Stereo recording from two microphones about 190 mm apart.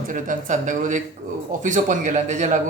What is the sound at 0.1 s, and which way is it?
A man's voice, 45° right (ahead or behind).